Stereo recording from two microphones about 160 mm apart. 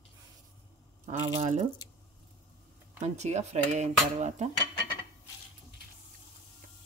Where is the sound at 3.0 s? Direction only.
45° right (ahead or behind).